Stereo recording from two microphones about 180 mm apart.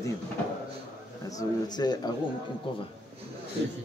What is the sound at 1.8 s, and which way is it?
Speech, 20° left (ahead or behind).